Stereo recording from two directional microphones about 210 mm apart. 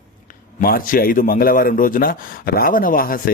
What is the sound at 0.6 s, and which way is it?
A man's voice, 40° left (ahead or behind).